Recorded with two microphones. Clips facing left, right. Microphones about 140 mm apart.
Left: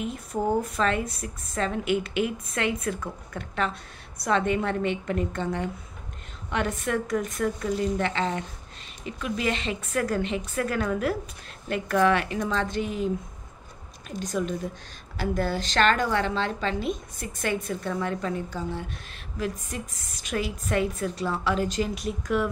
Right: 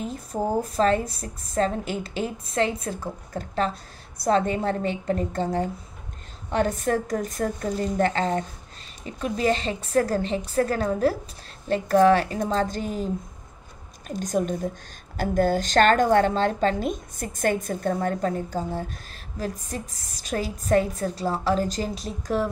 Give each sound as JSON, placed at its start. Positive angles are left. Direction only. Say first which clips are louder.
{"t": 0.0, "sound": "a woman's voice", "louder": "even", "side_deg": -35}